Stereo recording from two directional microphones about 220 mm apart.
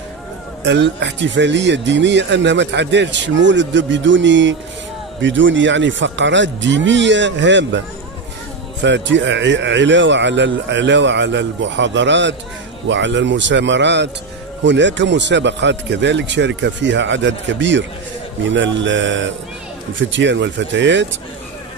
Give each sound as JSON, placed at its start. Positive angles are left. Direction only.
{"t": 0.7, "sound": "speech", "side_deg": -50}
{"t": 8.8, "sound": "speech", "side_deg": -55}